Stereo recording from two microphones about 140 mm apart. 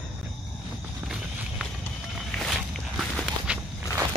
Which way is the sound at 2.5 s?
Centre (ahead or behind).